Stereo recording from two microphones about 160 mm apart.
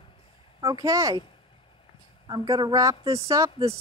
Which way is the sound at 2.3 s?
25° right (ahead or behind).